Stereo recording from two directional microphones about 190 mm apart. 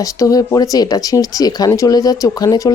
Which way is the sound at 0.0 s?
15° left (ahead or behind).